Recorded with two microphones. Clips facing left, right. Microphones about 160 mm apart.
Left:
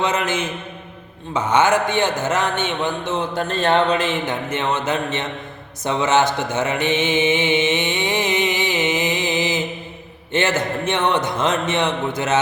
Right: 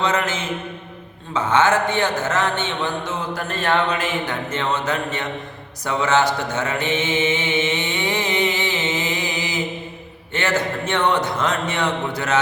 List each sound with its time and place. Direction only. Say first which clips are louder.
0.0 s a man's voice: left 1 dB; 20° left (ahead or behind)
5.8 s mantra: left 1 dB; 20° left (ahead or behind)
10.3 s a man's voice: left 2 dB; 20° left (ahead or behind)